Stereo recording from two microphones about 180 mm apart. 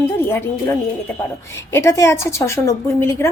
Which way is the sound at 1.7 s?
15° left (ahead or behind).